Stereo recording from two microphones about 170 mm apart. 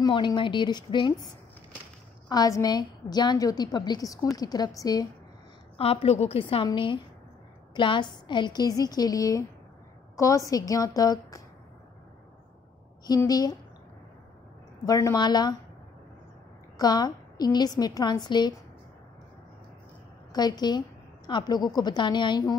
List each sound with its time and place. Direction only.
0.0 s a woman's voice: 25° left (ahead or behind)
5.8 s a woman's voice: 35° left (ahead or behind)
13.0 s a woman's voice: 20° left (ahead or behind)
14.9 s a woman's voice: 20° left (ahead or behind)
16.7 s a woman's voice: 25° left (ahead or behind)
20.3 s a woman's voice: 25° left (ahead or behind)